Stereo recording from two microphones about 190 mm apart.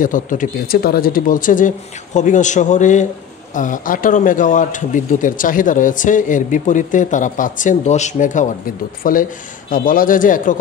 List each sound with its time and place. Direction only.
0.0 s a man's voice: 45° left (ahead or behind)